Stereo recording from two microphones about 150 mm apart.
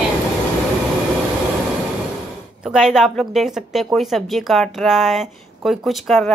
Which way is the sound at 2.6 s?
5° right (ahead or behind).